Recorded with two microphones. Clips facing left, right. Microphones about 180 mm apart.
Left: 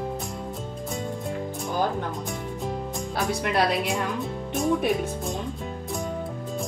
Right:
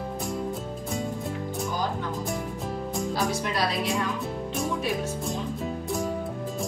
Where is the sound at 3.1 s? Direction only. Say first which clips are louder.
Left 4 dB; 60° left (ahead or behind).